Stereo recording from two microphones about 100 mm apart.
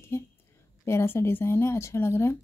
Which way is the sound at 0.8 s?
25° left (ahead or behind).